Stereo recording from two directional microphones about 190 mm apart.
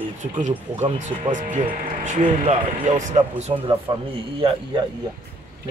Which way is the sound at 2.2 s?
30° right (ahead or behind).